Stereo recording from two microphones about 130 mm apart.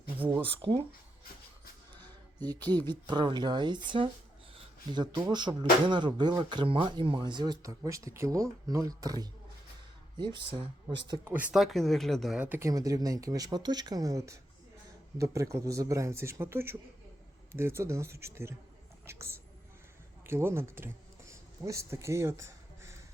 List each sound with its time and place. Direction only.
0.5 s speech: 45° right (ahead or behind)
2.4 s speech: 35° right (ahead or behind)
11.5 s speech: centre (ahead or behind)
12.4 s speech: 15° right (ahead or behind)